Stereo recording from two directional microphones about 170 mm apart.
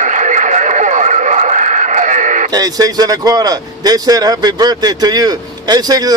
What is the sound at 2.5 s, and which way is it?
A man's voice, 20° right (ahead or behind).